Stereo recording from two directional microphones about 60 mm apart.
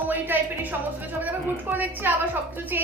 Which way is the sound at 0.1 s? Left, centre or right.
Right.